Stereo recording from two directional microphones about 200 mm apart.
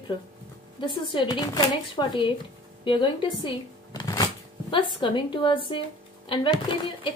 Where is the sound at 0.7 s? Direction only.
25° left (ahead or behind).